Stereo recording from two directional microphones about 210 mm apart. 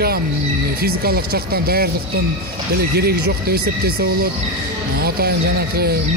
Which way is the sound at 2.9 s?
50° right (ahead or behind).